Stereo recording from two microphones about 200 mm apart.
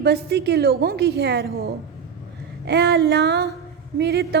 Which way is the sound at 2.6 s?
55° right (ahead or behind).